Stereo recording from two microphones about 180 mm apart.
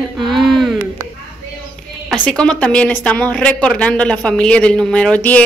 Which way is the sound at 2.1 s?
5° left (ahead or behind).